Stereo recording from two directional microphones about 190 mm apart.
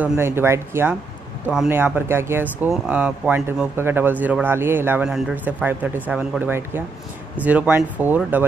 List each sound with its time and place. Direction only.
0.0 s speech: 10° right (ahead or behind)